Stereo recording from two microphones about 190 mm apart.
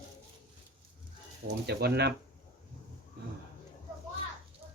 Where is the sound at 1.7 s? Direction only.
60° right (ahead or behind).